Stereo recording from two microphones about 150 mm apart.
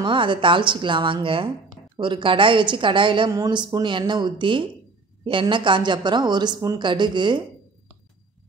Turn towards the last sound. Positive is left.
turn(degrees=-30)  # may be behind; listen again after turning